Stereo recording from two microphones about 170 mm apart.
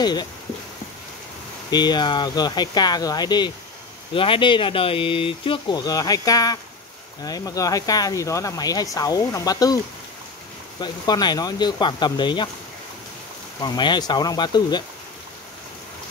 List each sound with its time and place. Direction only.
0.0 s speech: 25° left (ahead or behind)
1.7 s speech: 25° left (ahead or behind)
10.8 s speech: 25° left (ahead or behind)
13.6 s speech: 25° left (ahead or behind)